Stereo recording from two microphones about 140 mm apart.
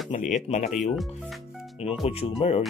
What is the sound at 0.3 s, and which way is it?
Speech, 65° left (ahead or behind).